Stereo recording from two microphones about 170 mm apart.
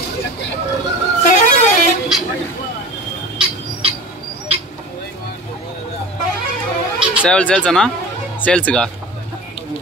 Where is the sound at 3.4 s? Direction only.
30° right (ahead or behind).